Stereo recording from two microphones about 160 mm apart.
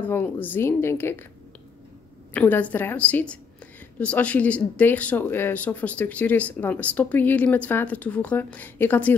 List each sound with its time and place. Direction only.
0.0 s speech: 10° left (ahead or behind)
2.3 s speech: 10° left (ahead or behind)